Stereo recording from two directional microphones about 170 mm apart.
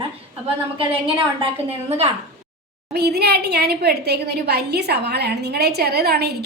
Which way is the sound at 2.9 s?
70° right (ahead or behind).